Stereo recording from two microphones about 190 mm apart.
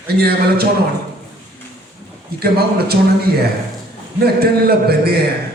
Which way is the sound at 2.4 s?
55° right (ahead or behind).